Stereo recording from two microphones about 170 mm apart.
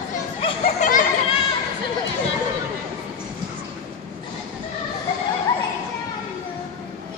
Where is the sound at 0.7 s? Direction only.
50° left (ahead or behind).